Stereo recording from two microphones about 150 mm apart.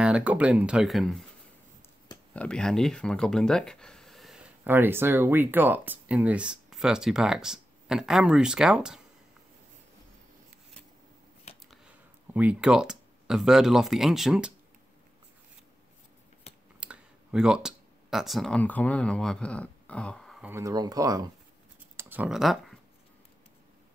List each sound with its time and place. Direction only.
0.0 s speech: 10° right (ahead or behind)
2.3 s speech: 5° left (ahead or behind)
4.6 s speech: 15° right (ahead or behind)
11.5 s a sound: 40° left (ahead or behind)
12.4 s speech: 5° right (ahead or behind)
16.5 s a sound: 45° left (ahead or behind)
16.8 s speech: 5° right (ahead or behind)
20.4 s speech: 20° right (ahead or behind)
21.9 s speech: 10° right (ahead or behind)